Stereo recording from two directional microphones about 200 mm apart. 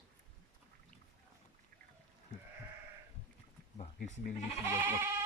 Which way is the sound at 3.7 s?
35° left (ahead or behind).